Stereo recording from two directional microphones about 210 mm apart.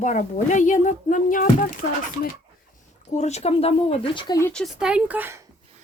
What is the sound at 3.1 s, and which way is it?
Speech, 30° left (ahead or behind).